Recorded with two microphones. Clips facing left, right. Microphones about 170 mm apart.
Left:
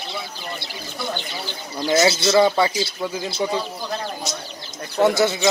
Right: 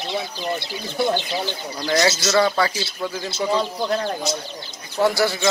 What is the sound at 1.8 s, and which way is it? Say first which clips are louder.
Speech: left 2 dB; 20° left (ahead or behind).